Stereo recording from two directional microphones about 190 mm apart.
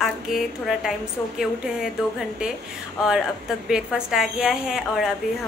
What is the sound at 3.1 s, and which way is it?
A woman's voice, centre (ahead or behind).